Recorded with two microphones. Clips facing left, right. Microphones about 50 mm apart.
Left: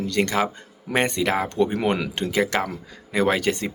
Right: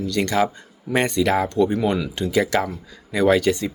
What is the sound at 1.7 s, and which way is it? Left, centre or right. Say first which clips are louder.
Speech: right 1 dB; left.